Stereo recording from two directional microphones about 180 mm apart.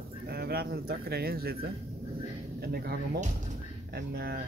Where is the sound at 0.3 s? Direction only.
60° right (ahead or behind).